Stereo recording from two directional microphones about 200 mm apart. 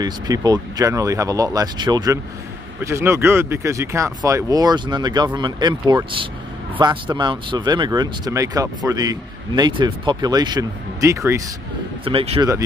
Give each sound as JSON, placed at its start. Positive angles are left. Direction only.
{"t": 0.0, "sound": "speech", "side_deg": -20}
{"t": 12.0, "sound": "speech", "side_deg": -25}